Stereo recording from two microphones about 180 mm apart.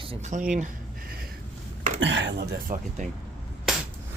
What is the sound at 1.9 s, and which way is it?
Speech, 90° right.